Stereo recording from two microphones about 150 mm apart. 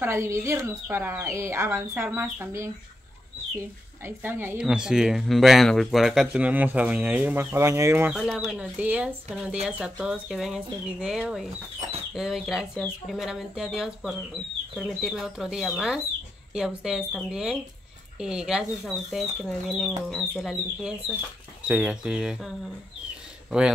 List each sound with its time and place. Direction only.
0.0 s speech: 15° right (ahead or behind)
4.6 s speech: 5° right (ahead or behind)
8.1 s speech: centre (ahead or behind)
12.7 s speech: 10° left (ahead or behind)
13.1 s speech: centre (ahead or behind)